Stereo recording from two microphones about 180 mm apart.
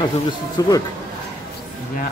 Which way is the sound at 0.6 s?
20° left (ahead or behind).